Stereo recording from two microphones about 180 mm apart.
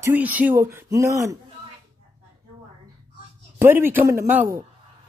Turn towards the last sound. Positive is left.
turn(degrees=-15)  # may be behind; listen again after turning